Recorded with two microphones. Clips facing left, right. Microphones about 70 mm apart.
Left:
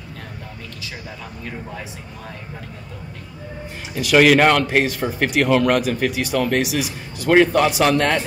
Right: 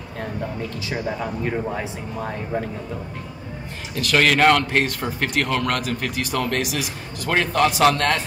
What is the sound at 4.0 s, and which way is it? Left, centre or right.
A man's voice, centre.